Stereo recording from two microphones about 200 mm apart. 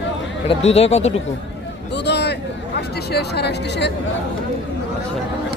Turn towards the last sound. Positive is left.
turn(degrees=55)  # may be behind; listen again after turning